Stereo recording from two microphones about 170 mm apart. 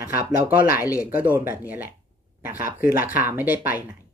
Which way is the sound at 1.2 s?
15° right (ahead or behind).